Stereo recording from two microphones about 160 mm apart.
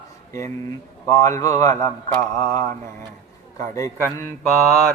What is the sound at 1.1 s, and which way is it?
Speech, 20° left (ahead or behind).